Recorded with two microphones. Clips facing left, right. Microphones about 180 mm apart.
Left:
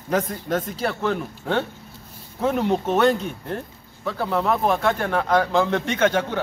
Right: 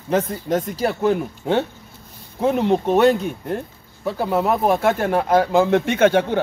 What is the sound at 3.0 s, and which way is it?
Speech, 10° right (ahead or behind).